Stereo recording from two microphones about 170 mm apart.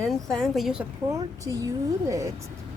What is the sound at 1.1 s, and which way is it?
Speech, 20° right (ahead or behind).